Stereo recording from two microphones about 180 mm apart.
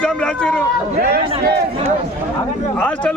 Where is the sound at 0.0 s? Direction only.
5° left (ahead or behind).